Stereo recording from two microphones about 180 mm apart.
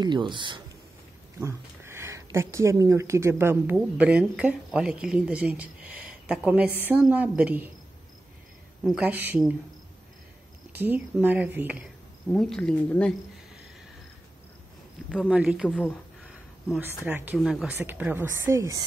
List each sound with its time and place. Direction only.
0.0 s speech: 25° right (ahead or behind)
1.4 s a woman's voice: 15° right (ahead or behind)
8.8 s speech: 5° right (ahead or behind)
10.7 s speech: 10° right (ahead or behind)
12.3 s speech: 5° left (ahead or behind)
15.0 s speech: centre (ahead or behind); by 18.9 s 15° right (ahead or behind)